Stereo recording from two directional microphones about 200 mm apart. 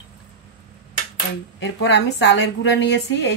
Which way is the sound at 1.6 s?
60° left (ahead or behind).